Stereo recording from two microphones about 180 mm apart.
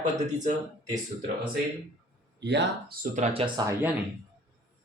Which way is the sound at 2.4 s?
70° right (ahead or behind).